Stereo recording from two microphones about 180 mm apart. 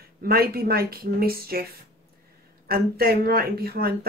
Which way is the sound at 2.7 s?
55° right (ahead or behind).